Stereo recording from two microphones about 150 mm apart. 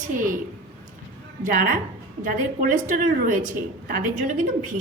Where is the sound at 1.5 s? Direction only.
65° right (ahead or behind).